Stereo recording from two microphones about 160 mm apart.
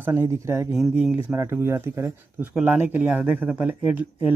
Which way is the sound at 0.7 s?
5° right (ahead or behind).